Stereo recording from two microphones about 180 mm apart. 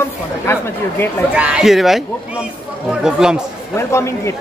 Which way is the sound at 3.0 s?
5° right (ahead or behind).